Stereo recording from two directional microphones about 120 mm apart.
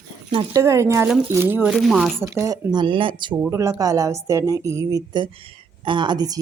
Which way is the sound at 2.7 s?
40° right (ahead or behind).